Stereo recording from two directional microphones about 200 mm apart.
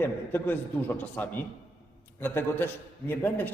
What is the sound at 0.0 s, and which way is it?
A man's voice, 10° left (ahead or behind).